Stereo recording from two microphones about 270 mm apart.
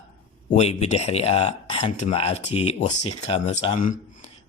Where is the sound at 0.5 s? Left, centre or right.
Left.